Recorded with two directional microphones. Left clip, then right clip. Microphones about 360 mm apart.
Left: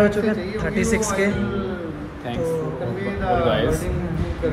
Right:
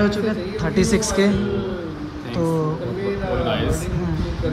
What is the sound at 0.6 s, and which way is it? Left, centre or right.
Speech, centre.